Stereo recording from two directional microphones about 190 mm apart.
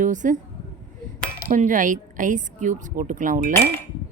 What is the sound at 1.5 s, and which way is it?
A woman's voice, 40° right (ahead or behind).